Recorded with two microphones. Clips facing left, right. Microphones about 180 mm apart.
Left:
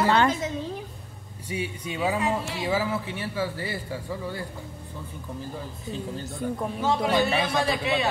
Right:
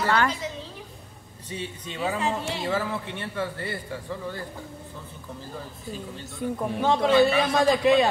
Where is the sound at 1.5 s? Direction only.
10° left (ahead or behind).